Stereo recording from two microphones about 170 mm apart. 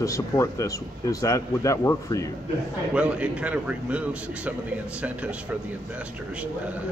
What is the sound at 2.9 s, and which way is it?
A man's voice, 5° right (ahead or behind).